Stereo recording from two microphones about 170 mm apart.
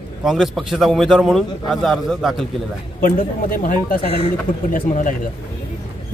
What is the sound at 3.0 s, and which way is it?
Speech, 55° left (ahead or behind).